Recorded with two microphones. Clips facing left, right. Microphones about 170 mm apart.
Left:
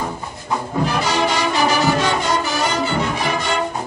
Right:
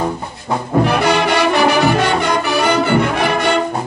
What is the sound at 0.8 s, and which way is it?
Brass instrument, 65° right (ahead or behind).